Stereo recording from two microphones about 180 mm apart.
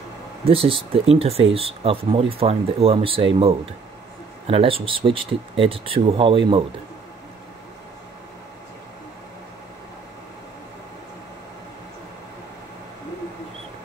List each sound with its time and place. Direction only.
0.5 s speech: 30° right (ahead or behind)
4.5 s speech: 30° right (ahead or behind)